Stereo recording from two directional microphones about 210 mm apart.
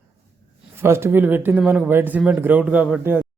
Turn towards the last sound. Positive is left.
turn(degrees=-10)  # may be behind; listen again after turning